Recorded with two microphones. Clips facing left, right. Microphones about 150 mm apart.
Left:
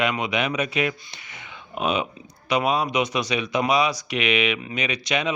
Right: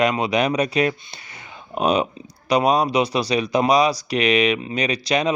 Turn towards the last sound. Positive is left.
turn(degrees=-35)  # may be behind; listen again after turning